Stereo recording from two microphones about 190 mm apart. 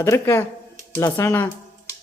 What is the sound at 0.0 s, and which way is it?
Speech, 15° left (ahead or behind).